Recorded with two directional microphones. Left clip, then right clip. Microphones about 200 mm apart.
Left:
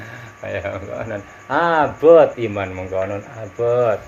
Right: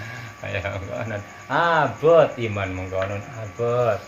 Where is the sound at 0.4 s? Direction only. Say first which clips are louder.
Left 3 dB; 15° left (ahead or behind).